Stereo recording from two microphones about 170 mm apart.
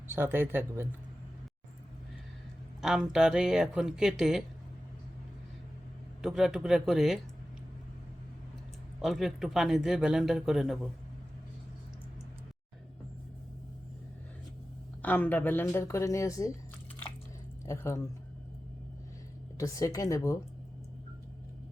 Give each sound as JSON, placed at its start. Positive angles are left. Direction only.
{"t": 0.1, "sound": "speech", "side_deg": -15}
{"t": 2.8, "sound": "speech", "side_deg": -5}
{"t": 6.2, "sound": "speech", "side_deg": 0}
{"t": 9.0, "sound": "speech", "side_deg": 0}
{"t": 15.0, "sound": "speech", "side_deg": 10}
{"t": 17.7, "sound": "speech", "side_deg": 15}
{"t": 19.5, "sound": "a woman's voice", "side_deg": 20}